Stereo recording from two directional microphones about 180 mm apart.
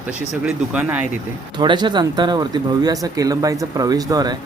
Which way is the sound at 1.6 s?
25° right (ahead or behind).